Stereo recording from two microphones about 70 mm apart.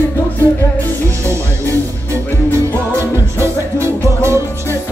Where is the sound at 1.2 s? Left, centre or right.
Right.